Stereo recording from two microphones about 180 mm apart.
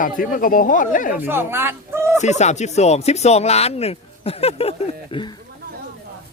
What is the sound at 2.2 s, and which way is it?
Speech, 40° left (ahead or behind).